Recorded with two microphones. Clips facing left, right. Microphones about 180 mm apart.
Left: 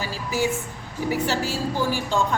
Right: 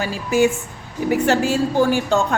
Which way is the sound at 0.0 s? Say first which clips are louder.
Right 8 dB; 70° right (ahead or behind).